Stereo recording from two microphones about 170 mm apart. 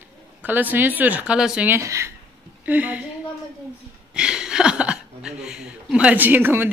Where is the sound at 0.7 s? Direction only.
10° right (ahead or behind).